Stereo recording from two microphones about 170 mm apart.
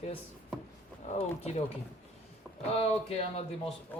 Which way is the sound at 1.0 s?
40° left (ahead or behind).